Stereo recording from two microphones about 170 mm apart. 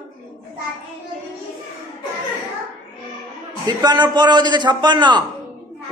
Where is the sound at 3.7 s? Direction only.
25° right (ahead or behind).